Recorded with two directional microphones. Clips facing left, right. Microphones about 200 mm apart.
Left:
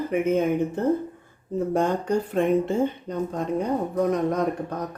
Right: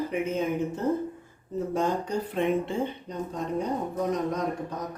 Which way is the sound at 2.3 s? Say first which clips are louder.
Left 4 dB; 45° left (ahead or behind).